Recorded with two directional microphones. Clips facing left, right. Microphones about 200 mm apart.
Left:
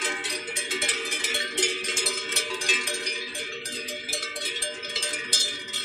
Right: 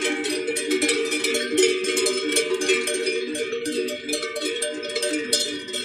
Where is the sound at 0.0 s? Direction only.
60° right (ahead or behind).